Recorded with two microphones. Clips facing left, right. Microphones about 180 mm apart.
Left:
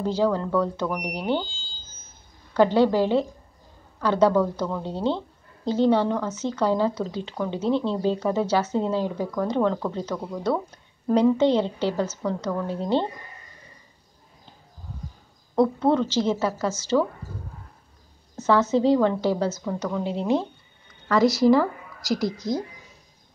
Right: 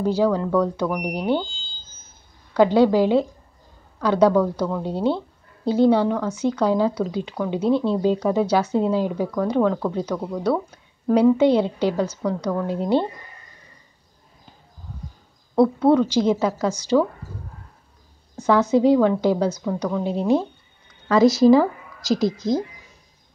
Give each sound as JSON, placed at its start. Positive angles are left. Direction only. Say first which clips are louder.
{"t": 0.0, "sound": "speech", "louder": "right 3 dB", "side_deg": -10}
{"t": 2.5, "sound": "speech", "louder": "right 3 dB", "side_deg": -15}
{"t": 15.5, "sound": "speech", "louder": "right 4 dB", "side_deg": -10}
{"t": 18.4, "sound": "a woman's voice", "louder": "right 3 dB", "side_deg": -15}
{"t": 20.0, "sound": "speech", "louder": "right 4 dB", "side_deg": -15}